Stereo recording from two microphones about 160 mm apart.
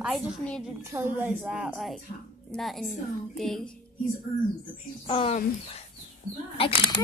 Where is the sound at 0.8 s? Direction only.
15° right (ahead or behind); by 3.7 s centre (ahead or behind).